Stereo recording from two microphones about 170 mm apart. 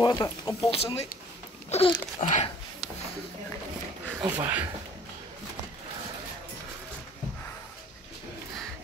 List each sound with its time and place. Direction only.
0.0 s speech: 25° left (ahead or behind)
0.7 s speech: 35° left (ahead or behind)
4.2 s speech: 10° right (ahead or behind)